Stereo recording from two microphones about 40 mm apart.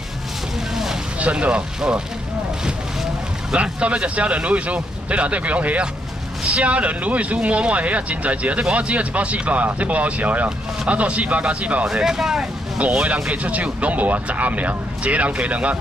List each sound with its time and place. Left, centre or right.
1.3 s speech: right
3.8 s speech: right
11.8 s speech: centre
13.0 s speech: right